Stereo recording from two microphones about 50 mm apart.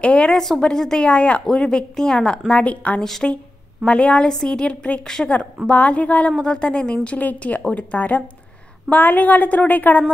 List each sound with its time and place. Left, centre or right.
0.0 s a woman's voice: left
1.0 s a woman's voice: left
3.0 s speech: centre
3.8 s a woman's voice: left
7.2 s a woman's voice: left